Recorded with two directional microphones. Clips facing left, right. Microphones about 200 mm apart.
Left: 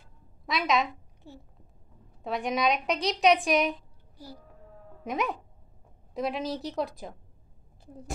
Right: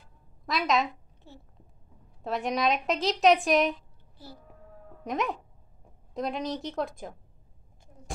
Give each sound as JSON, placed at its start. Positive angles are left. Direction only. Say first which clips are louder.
{"t": 0.5, "sound": "a woman's voice", "louder": "even", "side_deg": 0}
{"t": 1.3, "sound": "a child's voice", "louder": "left 3 dB", "side_deg": 15}
{"t": 2.2, "sound": "a woman's voice", "louder": "even", "side_deg": 0}
{"t": 5.0, "sound": "a woman's voice", "louder": "even", "side_deg": 0}